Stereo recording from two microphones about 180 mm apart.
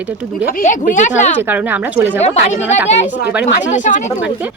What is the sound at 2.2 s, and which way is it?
Speech, 40° left (ahead or behind).